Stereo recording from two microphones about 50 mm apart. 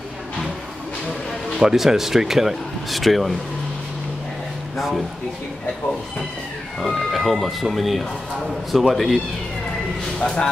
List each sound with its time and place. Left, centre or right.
1.6 s speech: centre
4.7 s speech: centre
6.8 s speech: centre
10.1 s speech: centre